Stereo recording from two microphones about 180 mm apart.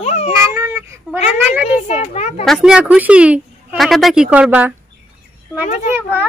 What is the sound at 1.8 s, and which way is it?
Speech, 35° left (ahead or behind).